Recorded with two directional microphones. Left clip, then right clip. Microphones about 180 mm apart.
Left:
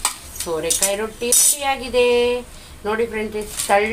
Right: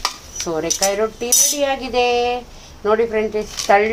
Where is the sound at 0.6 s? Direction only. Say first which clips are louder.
Right 4 dB; 45° right (ahead or behind).